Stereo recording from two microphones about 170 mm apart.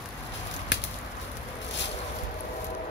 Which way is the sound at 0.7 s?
90° left.